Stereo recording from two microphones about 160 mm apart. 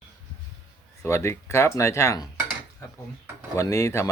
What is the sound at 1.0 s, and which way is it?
Speech, 15° left (ahead or behind).